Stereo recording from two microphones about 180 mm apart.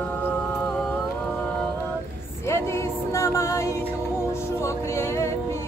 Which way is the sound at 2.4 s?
15° left (ahead or behind).